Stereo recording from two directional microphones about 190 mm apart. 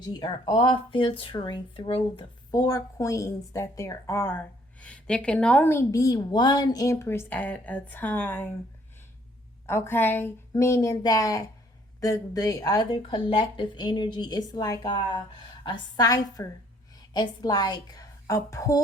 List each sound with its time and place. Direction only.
0.0 s speech: 25° left (ahead or behind)
9.6 s speech: 15° left (ahead or behind)